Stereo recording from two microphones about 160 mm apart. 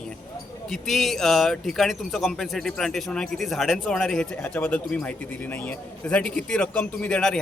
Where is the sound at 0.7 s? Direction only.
Centre (ahead or behind).